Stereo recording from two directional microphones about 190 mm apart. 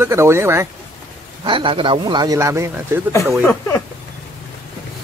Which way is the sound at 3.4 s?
15° left (ahead or behind).